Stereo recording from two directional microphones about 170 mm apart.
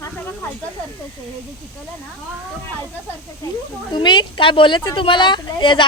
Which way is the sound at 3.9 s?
25° left (ahead or behind).